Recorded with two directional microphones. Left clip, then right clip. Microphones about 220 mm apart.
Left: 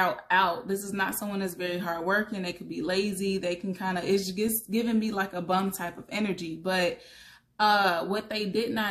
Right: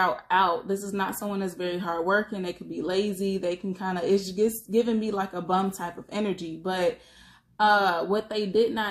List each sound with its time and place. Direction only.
0.0 s speech: 40° left (ahead or behind)